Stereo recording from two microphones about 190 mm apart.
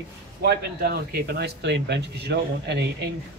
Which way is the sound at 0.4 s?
60° right (ahead or behind).